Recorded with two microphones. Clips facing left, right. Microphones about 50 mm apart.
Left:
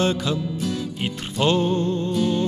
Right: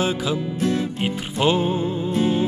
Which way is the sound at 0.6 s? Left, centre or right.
Right.